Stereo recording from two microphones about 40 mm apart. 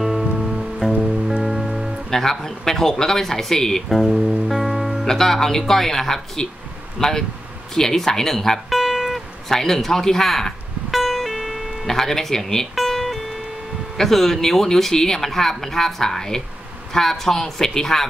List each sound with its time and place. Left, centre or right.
0.0 s music: centre
0.8 s music: centre
1.4 s music: centre
2.0 s speech: centre
3.9 s music: centre
5.0 s speech: centre
8.6 s music: centre
9.5 s music: centre
13.9 s speech: centre